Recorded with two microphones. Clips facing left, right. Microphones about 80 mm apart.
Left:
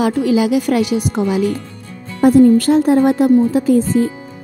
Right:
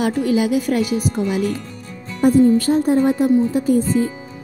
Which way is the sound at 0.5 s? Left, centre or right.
Left.